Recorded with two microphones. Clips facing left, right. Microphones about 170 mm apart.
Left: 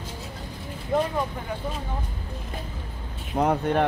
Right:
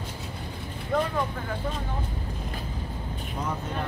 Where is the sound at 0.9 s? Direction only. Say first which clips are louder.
Left 2 dB; 20° left (ahead or behind).